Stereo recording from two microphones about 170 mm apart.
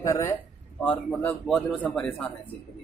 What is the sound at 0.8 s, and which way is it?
Speech, 5° left (ahead or behind).